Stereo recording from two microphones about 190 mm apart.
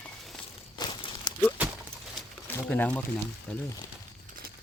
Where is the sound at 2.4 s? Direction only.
10° left (ahead or behind).